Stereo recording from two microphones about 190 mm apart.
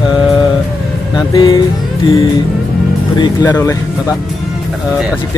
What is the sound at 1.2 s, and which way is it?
Speech, 20° left (ahead or behind).